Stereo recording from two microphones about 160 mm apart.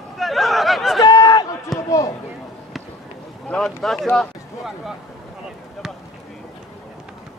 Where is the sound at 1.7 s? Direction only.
Centre (ahead or behind).